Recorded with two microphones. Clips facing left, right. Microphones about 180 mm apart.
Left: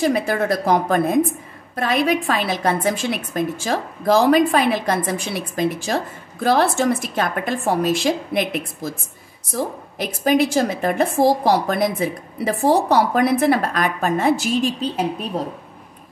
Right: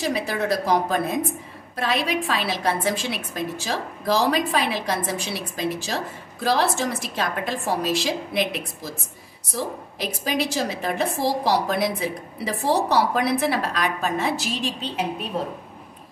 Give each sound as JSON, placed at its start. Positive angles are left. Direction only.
{"t": 0.0, "sound": "a woman's voice", "side_deg": 50}